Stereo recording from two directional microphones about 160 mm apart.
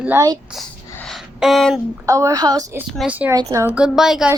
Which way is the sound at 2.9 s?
5° right (ahead or behind).